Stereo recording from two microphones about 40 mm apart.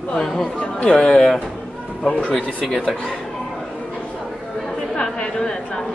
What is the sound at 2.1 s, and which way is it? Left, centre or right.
Speech, left.